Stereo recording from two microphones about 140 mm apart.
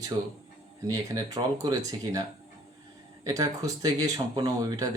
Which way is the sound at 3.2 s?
25° right (ahead or behind).